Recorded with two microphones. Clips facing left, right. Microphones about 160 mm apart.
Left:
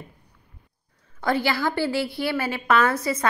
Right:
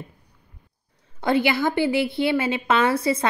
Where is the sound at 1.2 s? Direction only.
20° right (ahead or behind).